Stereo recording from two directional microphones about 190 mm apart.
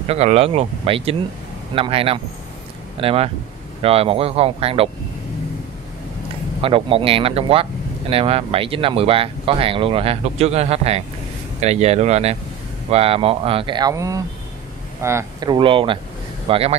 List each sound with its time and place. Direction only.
0.1 s speech: 35° right (ahead or behind)
6.6 s speech: 30° right (ahead or behind)
15.5 s speech: 25° right (ahead or behind)